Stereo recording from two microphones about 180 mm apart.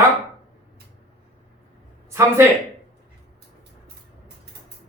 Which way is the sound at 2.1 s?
15° right (ahead or behind).